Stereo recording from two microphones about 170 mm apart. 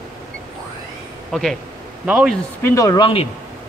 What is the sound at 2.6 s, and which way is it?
Speech, 15° left (ahead or behind).